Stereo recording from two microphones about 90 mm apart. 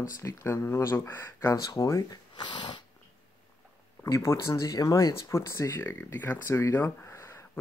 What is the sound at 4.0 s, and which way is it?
Speech, 30° left (ahead or behind).